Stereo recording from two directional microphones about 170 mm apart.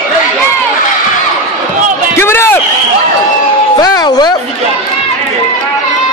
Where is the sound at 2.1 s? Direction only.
15° left (ahead or behind).